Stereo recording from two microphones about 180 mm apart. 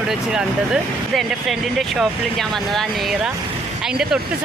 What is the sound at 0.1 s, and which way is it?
Speech, 5° right (ahead or behind).